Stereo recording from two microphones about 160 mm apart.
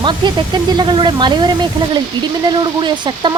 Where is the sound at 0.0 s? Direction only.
30° right (ahead or behind).